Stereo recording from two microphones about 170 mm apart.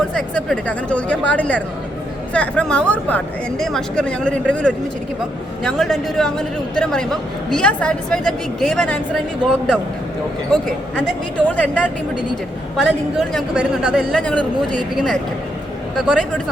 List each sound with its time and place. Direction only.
0.1 s a man's voice: 5° left (ahead or behind)
10.5 s a man's voice: 5° left (ahead or behind)